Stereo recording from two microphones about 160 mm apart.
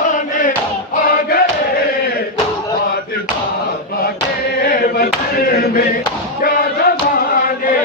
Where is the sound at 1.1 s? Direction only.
65° left (ahead or behind).